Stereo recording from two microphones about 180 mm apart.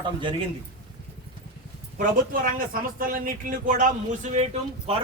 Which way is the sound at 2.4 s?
50° right (ahead or behind).